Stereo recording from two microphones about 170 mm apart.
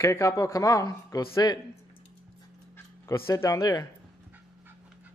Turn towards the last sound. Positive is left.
turn(degrees=20)  # may be behind; listen again after turning